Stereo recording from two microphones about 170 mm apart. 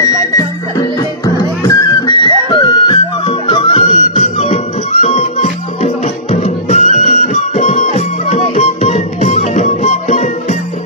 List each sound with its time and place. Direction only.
0.4 s music: 20° left (ahead or behind); by 10.3 s 40° left (ahead or behind)